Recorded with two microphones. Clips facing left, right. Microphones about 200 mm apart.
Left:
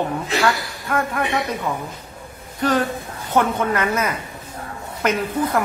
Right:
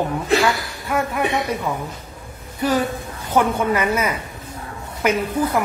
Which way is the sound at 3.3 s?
10° right (ahead or behind).